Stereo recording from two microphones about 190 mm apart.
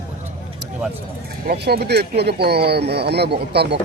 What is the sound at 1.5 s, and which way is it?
Speech, 55° right (ahead or behind).